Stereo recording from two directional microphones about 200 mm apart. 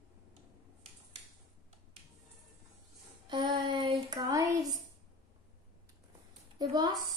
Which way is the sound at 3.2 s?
25° right (ahead or behind).